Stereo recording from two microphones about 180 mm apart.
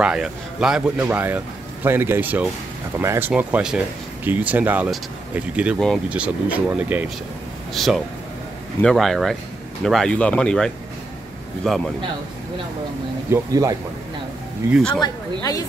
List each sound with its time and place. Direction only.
0.0 s a man's voice: 5° right (ahead or behind)
13.3 s speech: 20° right (ahead or behind)
15.0 s speech: 20° left (ahead or behind)